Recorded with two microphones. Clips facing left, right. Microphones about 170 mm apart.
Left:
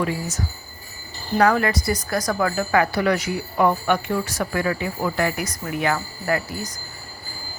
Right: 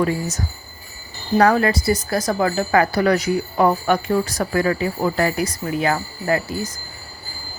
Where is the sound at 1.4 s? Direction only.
35° right (ahead or behind).